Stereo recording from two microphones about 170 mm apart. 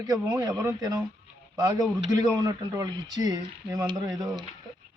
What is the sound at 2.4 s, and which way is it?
Speech, 20° right (ahead or behind).